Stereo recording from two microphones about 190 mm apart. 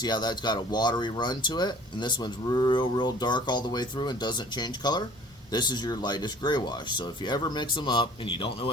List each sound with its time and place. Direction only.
0.0 s speech: 20° left (ahead or behind)